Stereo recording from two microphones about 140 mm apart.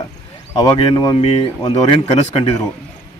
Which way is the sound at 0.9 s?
35° left (ahead or behind).